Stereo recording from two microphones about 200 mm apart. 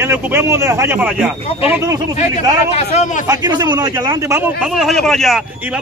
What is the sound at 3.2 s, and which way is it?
A man's voice, 20° right (ahead or behind).